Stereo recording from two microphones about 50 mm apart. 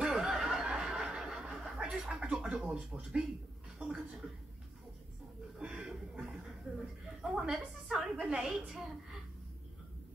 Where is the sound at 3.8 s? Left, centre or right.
Centre.